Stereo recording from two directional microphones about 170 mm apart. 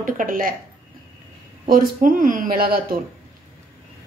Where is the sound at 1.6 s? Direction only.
55° right (ahead or behind).